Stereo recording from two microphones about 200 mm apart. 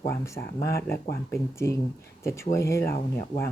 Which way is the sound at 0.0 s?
15° left (ahead or behind).